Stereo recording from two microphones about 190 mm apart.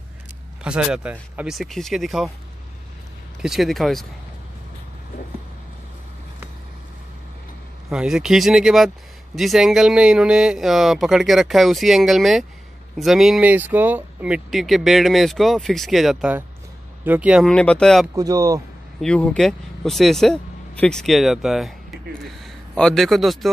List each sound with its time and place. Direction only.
0.7 s speech: 5° right (ahead or behind)
3.4 s speech: centre (ahead or behind)
7.9 s speech: 5° right (ahead or behind)
18.1 s speech: 20° right (ahead or behind)
18.9 s a man's voice: 5° left (ahead or behind)